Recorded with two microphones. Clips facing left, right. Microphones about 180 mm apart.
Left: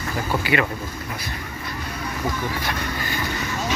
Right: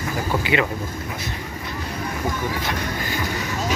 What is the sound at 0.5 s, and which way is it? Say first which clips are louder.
Speech: even; 20° right (ahead or behind).